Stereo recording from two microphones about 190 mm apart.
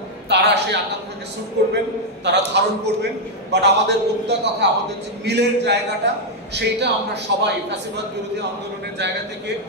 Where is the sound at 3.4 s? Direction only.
65° right (ahead or behind).